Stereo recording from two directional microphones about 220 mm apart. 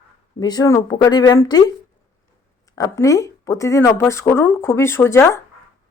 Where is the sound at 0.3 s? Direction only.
15° left (ahead or behind).